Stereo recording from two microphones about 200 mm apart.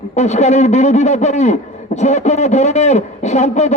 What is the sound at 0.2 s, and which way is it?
A man's voice, 35° left (ahead or behind).